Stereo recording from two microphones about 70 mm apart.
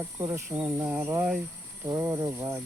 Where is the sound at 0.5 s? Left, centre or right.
Right.